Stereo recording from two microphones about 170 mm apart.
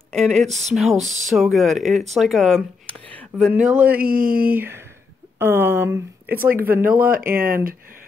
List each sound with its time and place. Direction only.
0.1 s speech: centre (ahead or behind)
0.5 s speech: 40° right (ahead or behind)
0.7 s speech: centre (ahead or behind)
3.5 s speech: 10° right (ahead or behind)
4.0 s speech: 55° right (ahead or behind)
4.6 s speech: 15° right (ahead or behind)
7.2 s speech: 55° right (ahead or behind)